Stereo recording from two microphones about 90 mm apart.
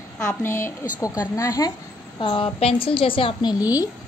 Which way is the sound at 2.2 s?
70° left (ahead or behind).